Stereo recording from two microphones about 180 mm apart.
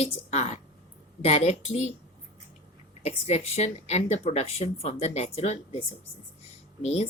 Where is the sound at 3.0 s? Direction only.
35° left (ahead or behind).